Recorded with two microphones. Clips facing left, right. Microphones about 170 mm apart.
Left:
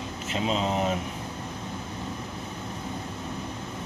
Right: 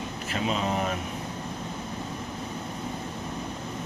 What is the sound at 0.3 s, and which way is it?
Speech, 25° left (ahead or behind).